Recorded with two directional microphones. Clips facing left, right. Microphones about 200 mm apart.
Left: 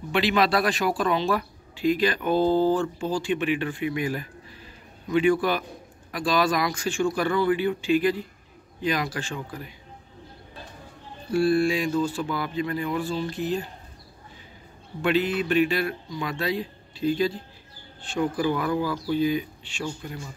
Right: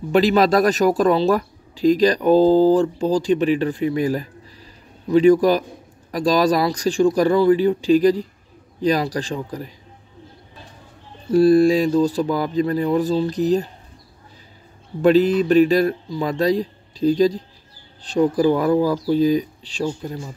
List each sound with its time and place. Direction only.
0.1 s speech: 40° right (ahead or behind)
11.2 s speech: 40° right (ahead or behind)
15.0 s speech: 40° right (ahead or behind)